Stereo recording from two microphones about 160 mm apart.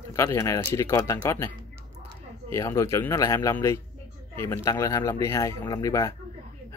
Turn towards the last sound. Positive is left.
turn(degrees=20)  # may be behind; listen again after turning